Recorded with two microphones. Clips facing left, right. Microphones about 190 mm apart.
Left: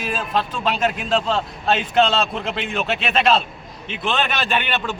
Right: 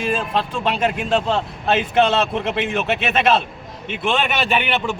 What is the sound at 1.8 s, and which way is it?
A man's voice, 10° right (ahead or behind).